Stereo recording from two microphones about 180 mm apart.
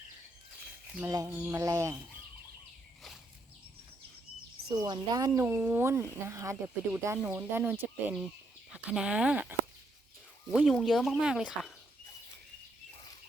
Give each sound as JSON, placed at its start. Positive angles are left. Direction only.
{"t": 1.0, "sound": "speech", "side_deg": -15}
{"t": 4.8, "sound": "speech", "side_deg": -20}